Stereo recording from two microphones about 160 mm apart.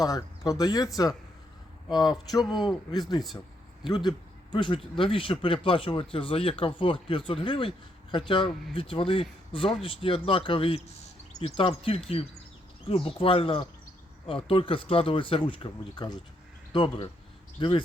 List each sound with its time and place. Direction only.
0.0 s speech: 20° left (ahead or behind)
3.8 s speech: 25° left (ahead or behind)